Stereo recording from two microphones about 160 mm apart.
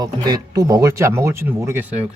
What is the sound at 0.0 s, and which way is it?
Speech, 25° right (ahead or behind).